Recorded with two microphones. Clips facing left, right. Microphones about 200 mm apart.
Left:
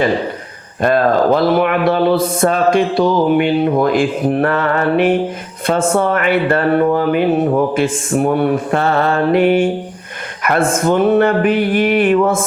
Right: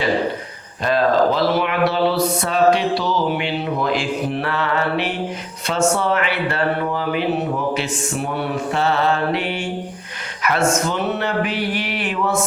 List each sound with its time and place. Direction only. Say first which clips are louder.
0.8 s speech: left 4 dB; 55° left (ahead or behind)